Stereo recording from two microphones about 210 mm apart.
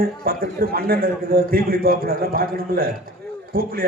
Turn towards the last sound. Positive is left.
turn(degrees=-45)  # may be behind; listen again after turning